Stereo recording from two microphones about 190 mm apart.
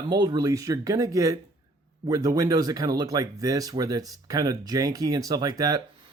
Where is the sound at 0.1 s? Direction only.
20° right (ahead or behind).